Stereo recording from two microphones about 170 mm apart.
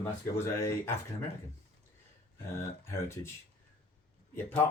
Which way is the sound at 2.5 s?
15° left (ahead or behind).